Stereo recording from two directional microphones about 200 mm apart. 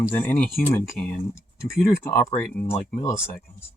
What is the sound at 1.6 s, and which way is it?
Speech, 45° left (ahead or behind).